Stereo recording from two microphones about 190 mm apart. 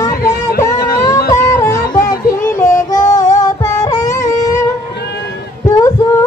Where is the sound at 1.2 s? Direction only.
15° left (ahead or behind).